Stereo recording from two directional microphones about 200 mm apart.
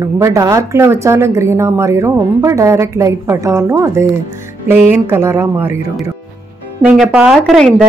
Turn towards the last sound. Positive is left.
turn(degrees=0)  # may be behind; listen again after turning